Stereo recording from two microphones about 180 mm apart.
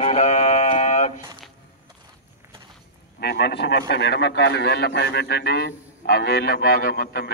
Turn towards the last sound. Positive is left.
turn(degrees=60)  # may be behind; listen again after turning